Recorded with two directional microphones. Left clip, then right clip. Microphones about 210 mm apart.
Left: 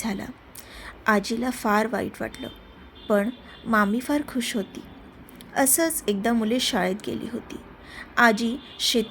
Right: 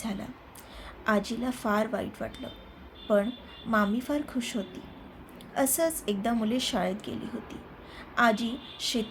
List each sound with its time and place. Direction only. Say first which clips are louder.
0.0 s a woman's voice: left 6 dB; 30° left (ahead or behind)